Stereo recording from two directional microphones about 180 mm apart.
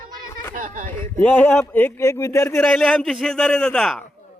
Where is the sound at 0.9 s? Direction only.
10° left (ahead or behind).